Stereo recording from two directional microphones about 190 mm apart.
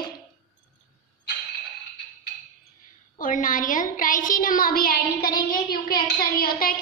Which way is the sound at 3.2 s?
45° left (ahead or behind).